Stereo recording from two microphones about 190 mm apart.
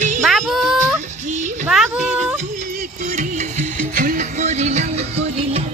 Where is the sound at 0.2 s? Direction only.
Centre (ahead or behind).